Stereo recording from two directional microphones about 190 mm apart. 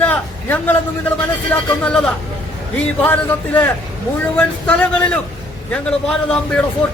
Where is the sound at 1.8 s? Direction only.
5° left (ahead or behind).